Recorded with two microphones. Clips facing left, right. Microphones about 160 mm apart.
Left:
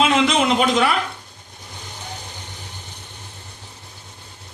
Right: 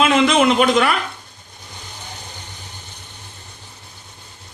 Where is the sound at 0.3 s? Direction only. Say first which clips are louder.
Right 3 dB; 55° right (ahead or behind).